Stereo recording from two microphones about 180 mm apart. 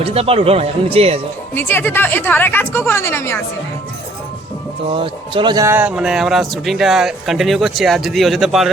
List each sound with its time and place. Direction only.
0.0 s speech: 35° right (ahead or behind)
1.5 s a woman's voice: 10° left (ahead or behind)
4.9 s speech: 30° right (ahead or behind)
5.6 s speech: 10° right (ahead or behind)